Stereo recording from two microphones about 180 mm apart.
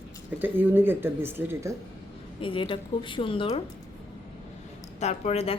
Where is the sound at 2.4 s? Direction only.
30° left (ahead or behind).